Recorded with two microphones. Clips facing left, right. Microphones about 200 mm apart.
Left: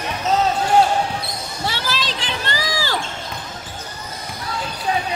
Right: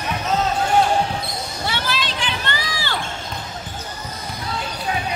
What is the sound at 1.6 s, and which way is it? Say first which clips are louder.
Children playing: left 1 dB; 35° left (ahead or behind).